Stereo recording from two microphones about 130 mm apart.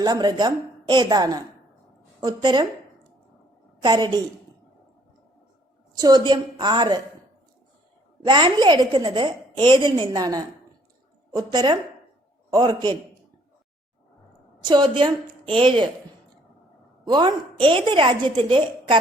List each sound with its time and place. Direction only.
0.0 s a woman's voice: 35° right (ahead or behind)
3.8 s a woman's voice: 35° right (ahead or behind)
6.0 s a woman's voice: 30° right (ahead or behind)
8.3 s a woman's voice: 35° right (ahead or behind)
14.6 s a woman's voice: 35° right (ahead or behind)
17.1 s a woman's voice: 35° right (ahead or behind)